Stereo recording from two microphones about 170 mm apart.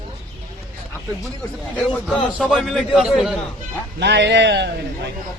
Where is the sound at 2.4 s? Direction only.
Centre (ahead or behind).